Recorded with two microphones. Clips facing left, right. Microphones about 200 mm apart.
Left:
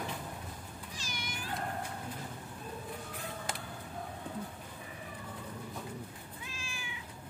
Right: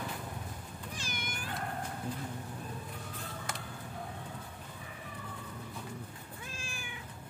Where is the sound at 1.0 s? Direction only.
55° right (ahead or behind).